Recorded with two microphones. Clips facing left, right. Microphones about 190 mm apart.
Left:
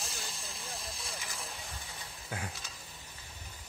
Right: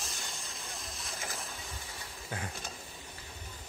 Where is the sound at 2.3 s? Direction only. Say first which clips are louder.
Right 1 dB; 5° left (ahead or behind).